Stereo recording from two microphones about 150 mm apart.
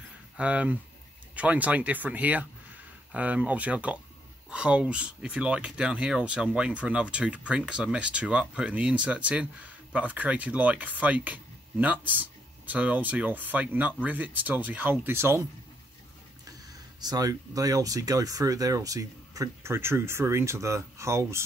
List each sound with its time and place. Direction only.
0.4 s speech: 10° right (ahead or behind)
17.0 s speech: 25° right (ahead or behind)